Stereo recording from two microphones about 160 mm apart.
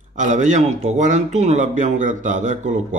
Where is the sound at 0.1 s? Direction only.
50° right (ahead or behind).